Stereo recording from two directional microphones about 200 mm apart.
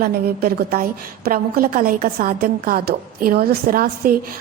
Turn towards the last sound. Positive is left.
turn(degrees=-45)  # may be behind; listen again after turning